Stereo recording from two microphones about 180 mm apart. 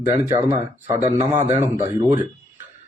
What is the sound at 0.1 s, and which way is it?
Speech, 15° right (ahead or behind).